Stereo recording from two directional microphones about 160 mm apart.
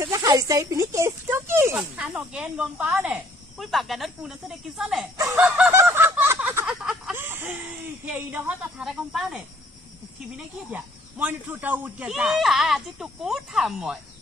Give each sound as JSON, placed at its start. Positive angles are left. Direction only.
{"t": 0.0, "sound": "speech", "side_deg": -25}
{"t": 5.7, "sound": "fowl", "side_deg": -15}
{"t": 8.0, "sound": "speech", "side_deg": -10}